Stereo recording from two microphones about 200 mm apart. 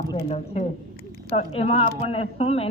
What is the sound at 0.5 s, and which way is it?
A woman's voice, 30° left (ahead or behind).